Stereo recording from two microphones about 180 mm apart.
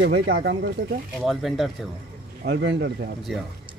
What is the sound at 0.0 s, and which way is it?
Speech, 60° right (ahead or behind).